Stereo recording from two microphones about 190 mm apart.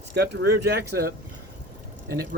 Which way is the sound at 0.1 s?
60° right (ahead or behind).